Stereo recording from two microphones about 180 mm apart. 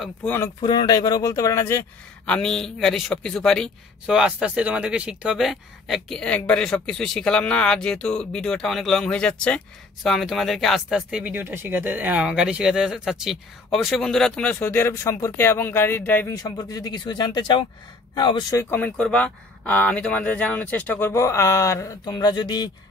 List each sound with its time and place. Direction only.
0.0 s speech: 10° left (ahead or behind)
0.6 s speech: 25° left (ahead or behind)
2.2 s speech: 5° left (ahead or behind); by 18.6 s 25° left (ahead or behind)
18.6 s speech: 10° left (ahead or behind)